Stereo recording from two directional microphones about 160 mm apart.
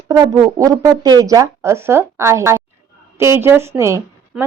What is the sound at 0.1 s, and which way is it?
A woman's voice, 25° right (ahead or behind).